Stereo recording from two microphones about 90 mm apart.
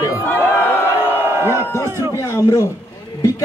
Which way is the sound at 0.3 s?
25° left (ahead or behind).